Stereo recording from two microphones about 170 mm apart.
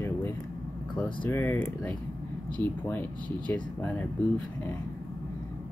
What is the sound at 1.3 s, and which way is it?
Speech, 10° left (ahead or behind).